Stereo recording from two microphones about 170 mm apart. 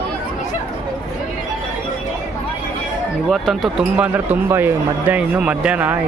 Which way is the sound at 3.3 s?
Centre (ahead or behind).